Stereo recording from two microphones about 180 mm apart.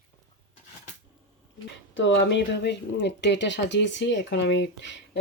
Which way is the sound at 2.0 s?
90° left.